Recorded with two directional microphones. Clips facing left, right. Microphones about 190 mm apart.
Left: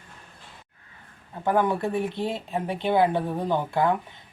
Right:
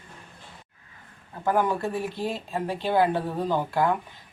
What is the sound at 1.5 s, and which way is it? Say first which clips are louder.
Speech: left 1 dB; 20° left (ahead or behind).